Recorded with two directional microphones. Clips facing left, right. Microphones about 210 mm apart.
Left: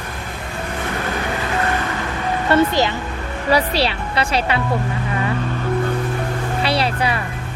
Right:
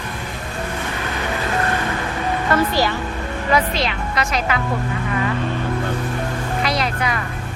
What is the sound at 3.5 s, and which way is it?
Speech, 35° left (ahead or behind).